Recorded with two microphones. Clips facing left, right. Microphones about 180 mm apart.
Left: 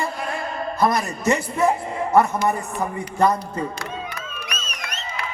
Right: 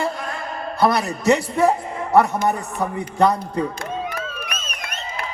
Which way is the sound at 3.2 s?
60° right (ahead or behind).